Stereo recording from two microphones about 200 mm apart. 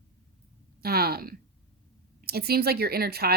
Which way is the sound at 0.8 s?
50° right (ahead or behind).